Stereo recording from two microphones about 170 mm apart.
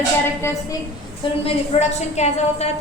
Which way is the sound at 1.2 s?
30° left (ahead or behind).